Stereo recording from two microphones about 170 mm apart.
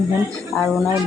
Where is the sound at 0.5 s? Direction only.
Centre (ahead or behind).